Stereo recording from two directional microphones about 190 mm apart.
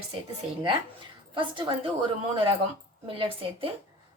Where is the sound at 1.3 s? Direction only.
25° right (ahead or behind).